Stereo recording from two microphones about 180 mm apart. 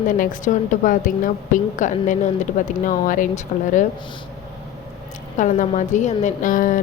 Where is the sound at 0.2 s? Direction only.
45° left (ahead or behind).